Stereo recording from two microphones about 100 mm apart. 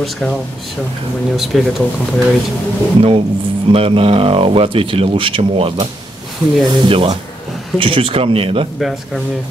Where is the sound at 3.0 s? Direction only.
70° right (ahead or behind).